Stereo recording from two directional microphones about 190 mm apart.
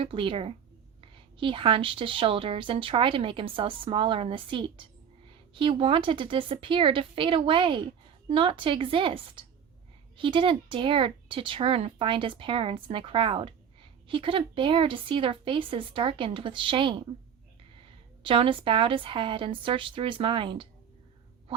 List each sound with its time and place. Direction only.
0.0 s speech: 25° right (ahead or behind)
18.2 s speech: 25° right (ahead or behind)